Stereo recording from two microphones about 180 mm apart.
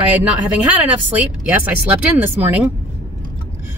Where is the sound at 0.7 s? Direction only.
10° right (ahead or behind).